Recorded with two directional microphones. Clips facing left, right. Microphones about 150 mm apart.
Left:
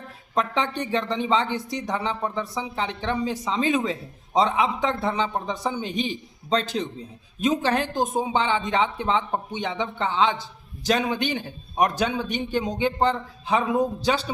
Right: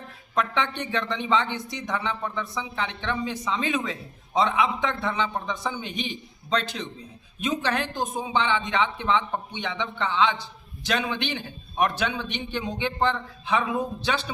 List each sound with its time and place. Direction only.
0.3 s speech: 35° left (ahead or behind)